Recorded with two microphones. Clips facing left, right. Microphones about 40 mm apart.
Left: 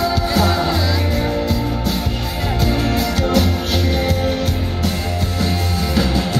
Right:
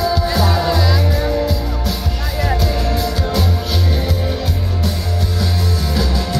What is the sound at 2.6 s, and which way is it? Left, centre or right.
Music, left.